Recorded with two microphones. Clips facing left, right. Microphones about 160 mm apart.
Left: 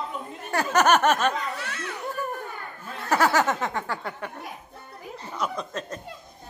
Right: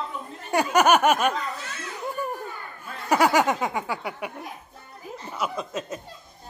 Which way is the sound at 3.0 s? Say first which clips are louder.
Right 2 dB; 15° right (ahead or behind).